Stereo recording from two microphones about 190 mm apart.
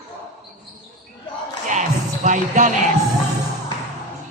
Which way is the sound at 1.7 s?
40° right (ahead or behind).